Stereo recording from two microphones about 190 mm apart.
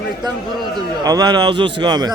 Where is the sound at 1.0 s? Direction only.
20° right (ahead or behind).